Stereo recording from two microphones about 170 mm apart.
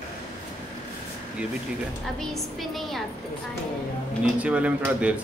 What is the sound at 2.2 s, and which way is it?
Speech, centre (ahead or behind).